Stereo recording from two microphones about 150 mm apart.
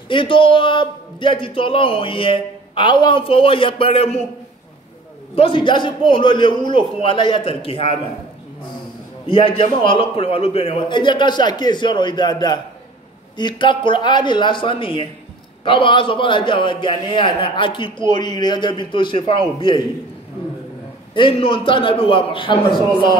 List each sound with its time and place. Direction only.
0.1 s a man's voice: 35° left (ahead or behind)
5.3 s a man's voice: 40° left (ahead or behind)
9.3 s a man's voice: 35° left (ahead or behind)
21.1 s a man's voice: 35° left (ahead or behind)